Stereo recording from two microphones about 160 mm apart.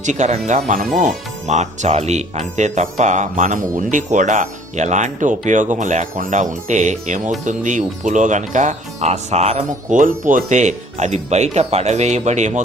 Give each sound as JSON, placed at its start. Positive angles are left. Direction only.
{"t": 0.0, "sound": "speech", "side_deg": -50}